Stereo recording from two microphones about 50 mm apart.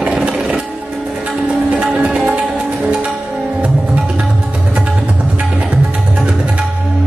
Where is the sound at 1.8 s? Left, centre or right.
Right.